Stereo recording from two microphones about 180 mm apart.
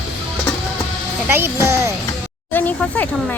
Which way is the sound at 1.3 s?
15° right (ahead or behind).